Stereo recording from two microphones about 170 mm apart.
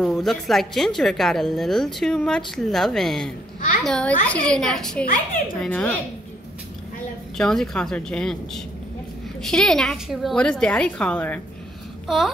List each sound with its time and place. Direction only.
0.0 s a woman's voice: centre (ahead or behind)
5.0 s a woman's voice: 50° left (ahead or behind)
5.6 s speech: 10° left (ahead or behind)
7.3 s a woman's voice: 5° left (ahead or behind)